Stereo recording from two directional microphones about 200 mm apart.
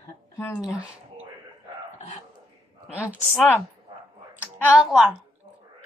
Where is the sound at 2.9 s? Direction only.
5° right (ahead or behind).